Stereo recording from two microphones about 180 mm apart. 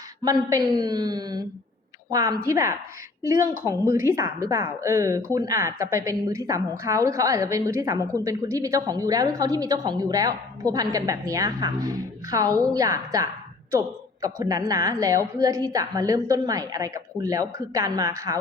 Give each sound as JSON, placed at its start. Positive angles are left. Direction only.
{"t": 0.3, "sound": "a woman's voice", "side_deg": -20}